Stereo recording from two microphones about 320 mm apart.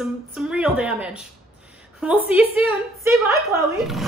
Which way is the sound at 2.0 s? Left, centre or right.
Centre.